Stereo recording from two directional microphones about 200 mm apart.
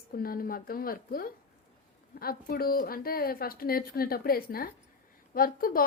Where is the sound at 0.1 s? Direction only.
45° left (ahead or behind).